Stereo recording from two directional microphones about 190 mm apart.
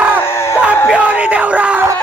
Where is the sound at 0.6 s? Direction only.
5° right (ahead or behind).